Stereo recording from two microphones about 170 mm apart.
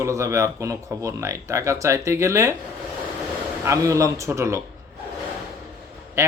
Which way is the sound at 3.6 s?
20° right (ahead or behind).